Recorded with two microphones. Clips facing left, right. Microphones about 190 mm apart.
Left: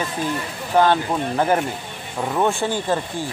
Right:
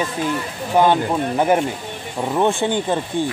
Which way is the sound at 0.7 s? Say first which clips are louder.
Right 2 dB; 15° right (ahead or behind).